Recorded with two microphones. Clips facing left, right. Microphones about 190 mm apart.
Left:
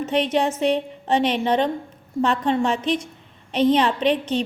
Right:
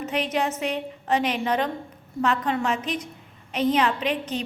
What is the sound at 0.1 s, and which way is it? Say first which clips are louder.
A woman's voice: left 5 dB; 30° left (ahead or behind).